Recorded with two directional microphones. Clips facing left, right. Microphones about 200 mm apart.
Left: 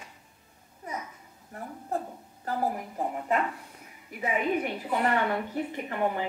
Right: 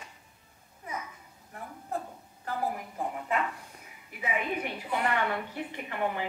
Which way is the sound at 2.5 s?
40° left (ahead or behind).